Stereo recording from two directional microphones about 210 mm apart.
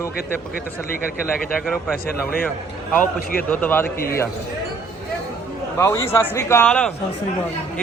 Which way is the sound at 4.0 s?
45° left (ahead or behind).